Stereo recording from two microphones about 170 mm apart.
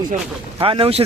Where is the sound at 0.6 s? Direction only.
35° right (ahead or behind).